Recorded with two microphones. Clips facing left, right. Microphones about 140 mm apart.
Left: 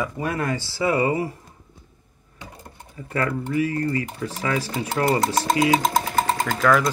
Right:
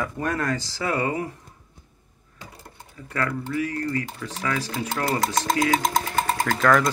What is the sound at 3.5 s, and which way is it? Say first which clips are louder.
Speech: left 4 dB; 10° left (ahead or behind).